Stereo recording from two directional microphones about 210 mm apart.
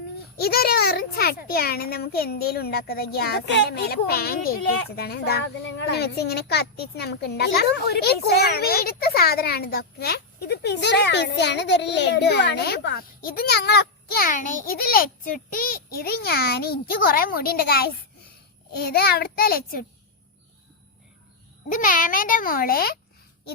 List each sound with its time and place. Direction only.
0.3 s a child's voice: 45° left (ahead or behind)
21.7 s a child's voice: 40° left (ahead or behind)